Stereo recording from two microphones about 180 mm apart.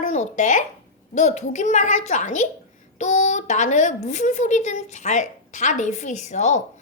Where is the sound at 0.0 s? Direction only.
40° left (ahead or behind).